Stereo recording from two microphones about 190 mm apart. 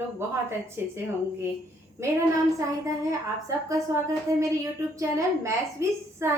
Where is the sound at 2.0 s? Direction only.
15° right (ahead or behind).